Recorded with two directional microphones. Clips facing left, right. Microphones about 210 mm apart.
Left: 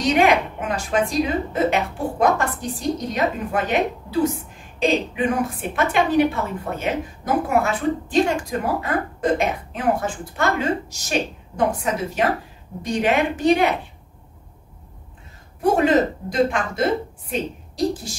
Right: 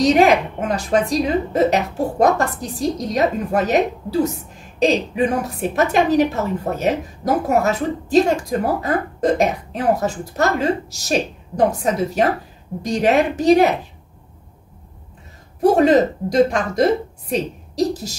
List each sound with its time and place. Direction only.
0.0 s a woman's voice: 40° right (ahead or behind)
15.6 s a woman's voice: 40° right (ahead or behind)